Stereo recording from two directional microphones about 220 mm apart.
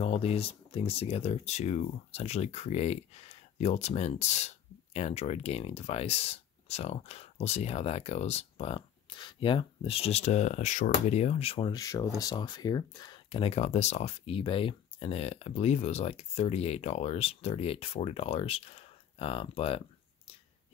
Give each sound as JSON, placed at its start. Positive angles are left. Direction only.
{"t": 0.0, "sound": "speech", "side_deg": 25}